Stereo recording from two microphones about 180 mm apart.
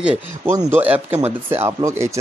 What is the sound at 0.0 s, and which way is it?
Speech, 5° right (ahead or behind).